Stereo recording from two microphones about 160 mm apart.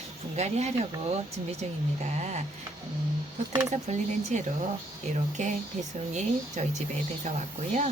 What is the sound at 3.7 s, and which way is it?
Speech, 50° right (ahead or behind).